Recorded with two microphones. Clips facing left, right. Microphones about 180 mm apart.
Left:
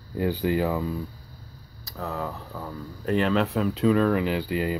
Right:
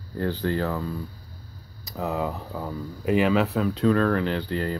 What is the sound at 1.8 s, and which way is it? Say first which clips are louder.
Speech: right 4 dB; 15° right (ahead or behind).